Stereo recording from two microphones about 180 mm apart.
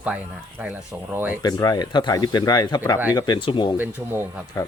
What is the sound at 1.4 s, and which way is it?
Speech, 20° left (ahead or behind).